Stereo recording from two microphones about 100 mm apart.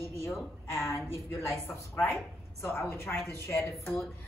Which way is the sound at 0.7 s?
25° left (ahead or behind).